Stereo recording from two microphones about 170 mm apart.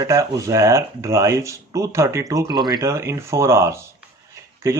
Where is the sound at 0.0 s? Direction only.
20° right (ahead or behind).